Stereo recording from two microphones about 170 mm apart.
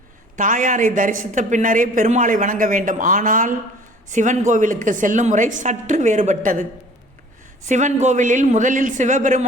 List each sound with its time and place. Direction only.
0.3 s speech: 50° right (ahead or behind)
7.7 s speech: 45° right (ahead or behind)